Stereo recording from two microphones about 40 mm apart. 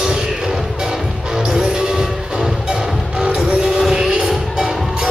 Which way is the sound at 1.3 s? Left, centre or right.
Centre.